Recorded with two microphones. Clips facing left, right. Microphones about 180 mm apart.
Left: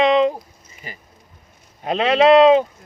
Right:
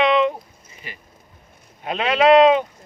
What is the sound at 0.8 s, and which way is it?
Speech, 40° left (ahead or behind).